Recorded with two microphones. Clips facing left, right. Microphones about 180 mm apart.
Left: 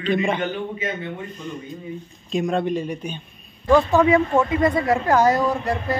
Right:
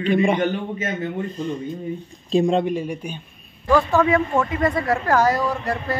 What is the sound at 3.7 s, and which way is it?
A man's voice, 15° left (ahead or behind).